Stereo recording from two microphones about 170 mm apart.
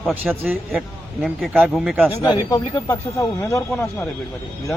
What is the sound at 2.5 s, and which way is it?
A man's voice, 20° left (ahead or behind).